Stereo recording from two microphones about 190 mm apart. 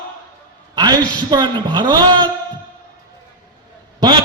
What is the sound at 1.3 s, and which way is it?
A man's voice, 25° right (ahead or behind).